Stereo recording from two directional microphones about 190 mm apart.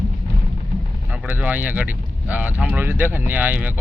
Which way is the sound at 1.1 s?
5° right (ahead or behind).